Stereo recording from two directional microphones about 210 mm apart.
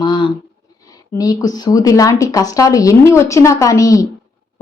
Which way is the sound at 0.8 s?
15° left (ahead or behind).